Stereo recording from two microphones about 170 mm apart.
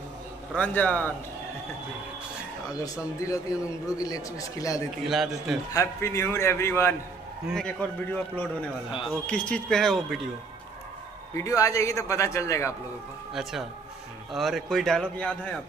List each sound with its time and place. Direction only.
0.6 s a man's voice: 10° left (ahead or behind)
3.2 s a man's voice: 20° left (ahead or behind)
5.0 s a man's voice: centre (ahead or behind)
5.7 s a man's voice: 15° left (ahead or behind)
7.4 s a man's voice: 5° left (ahead or behind)
11.3 s a man's voice: 20° left (ahead or behind)
13.3 s a man's voice: centre (ahead or behind)